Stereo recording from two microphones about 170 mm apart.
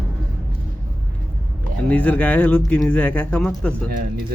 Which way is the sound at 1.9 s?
10° left (ahead or behind).